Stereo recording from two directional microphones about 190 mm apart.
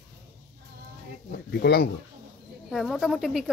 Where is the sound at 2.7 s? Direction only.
Centre (ahead or behind).